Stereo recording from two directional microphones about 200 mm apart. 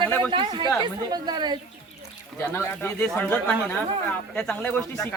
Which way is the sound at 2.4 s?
10° left (ahead or behind).